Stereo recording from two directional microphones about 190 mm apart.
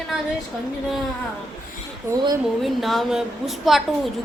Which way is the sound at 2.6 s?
Centre (ahead or behind).